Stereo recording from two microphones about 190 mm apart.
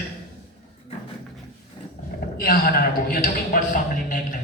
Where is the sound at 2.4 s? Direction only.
50° left (ahead or behind).